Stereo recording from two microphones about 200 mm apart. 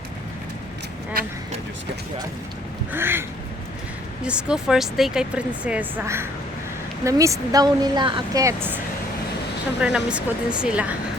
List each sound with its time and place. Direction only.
2.9 s a woman's voice: 10° right (ahead or behind)
9.8 s speech: 5° right (ahead or behind)